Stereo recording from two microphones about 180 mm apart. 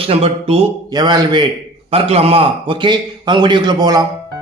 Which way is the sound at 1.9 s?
35° right (ahead or behind).